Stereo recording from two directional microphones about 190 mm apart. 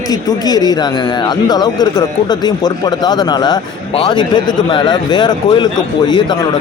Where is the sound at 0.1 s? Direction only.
20° left (ahead or behind).